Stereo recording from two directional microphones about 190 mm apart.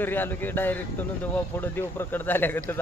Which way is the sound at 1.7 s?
10° left (ahead or behind).